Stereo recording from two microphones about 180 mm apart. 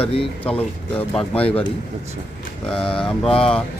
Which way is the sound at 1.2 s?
30° left (ahead or behind).